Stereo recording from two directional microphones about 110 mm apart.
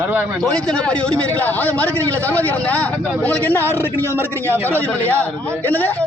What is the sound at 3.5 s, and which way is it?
A man's voice, 20° right (ahead or behind).